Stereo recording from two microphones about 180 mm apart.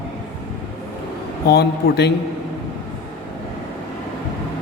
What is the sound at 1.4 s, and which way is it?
Speech, 65° left (ahead or behind).